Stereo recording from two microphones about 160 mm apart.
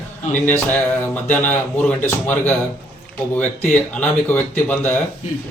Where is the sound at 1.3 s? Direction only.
10° left (ahead or behind).